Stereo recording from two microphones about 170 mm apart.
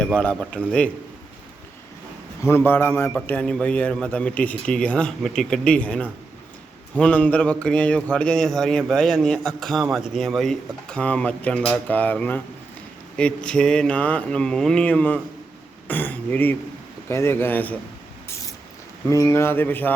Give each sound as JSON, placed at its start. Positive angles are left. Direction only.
{"t": 0.0, "sound": "a man's voice", "side_deg": 5}
{"t": 2.4, "sound": "a man's voice", "side_deg": 15}
{"t": 18.3, "sound": "a sound", "side_deg": 20}
{"t": 19.0, "sound": "a man's voice", "side_deg": 15}